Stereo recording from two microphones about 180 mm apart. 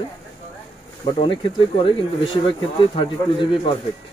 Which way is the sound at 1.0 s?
25° left (ahead or behind).